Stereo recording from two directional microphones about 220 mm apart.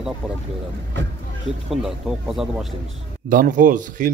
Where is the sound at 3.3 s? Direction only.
35° right (ahead or behind).